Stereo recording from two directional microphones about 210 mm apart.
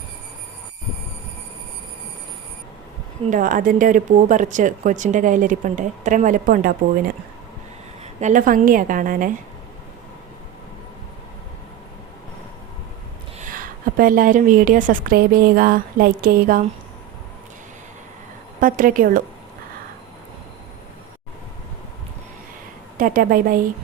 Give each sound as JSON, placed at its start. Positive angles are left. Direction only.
{"t": 3.2, "sound": "speech", "side_deg": -40}
{"t": 8.2, "sound": "speech", "side_deg": -40}
{"t": 13.4, "sound": "speech", "side_deg": -40}
{"t": 18.6, "sound": "speech", "side_deg": -40}
{"t": 23.0, "sound": "a woman's voice", "side_deg": -40}